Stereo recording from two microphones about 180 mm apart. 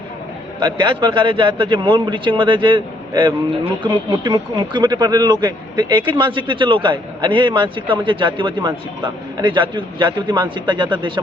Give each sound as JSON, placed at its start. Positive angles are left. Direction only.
{"t": 0.6, "sound": "a man's voice", "side_deg": -25}